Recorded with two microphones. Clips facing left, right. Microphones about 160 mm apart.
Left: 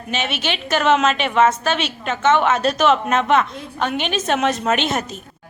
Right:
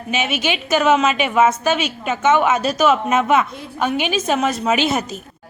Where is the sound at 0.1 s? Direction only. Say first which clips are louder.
Right 3 dB; 10° right (ahead or behind).